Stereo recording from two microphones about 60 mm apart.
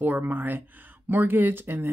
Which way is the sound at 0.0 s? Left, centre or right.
Right.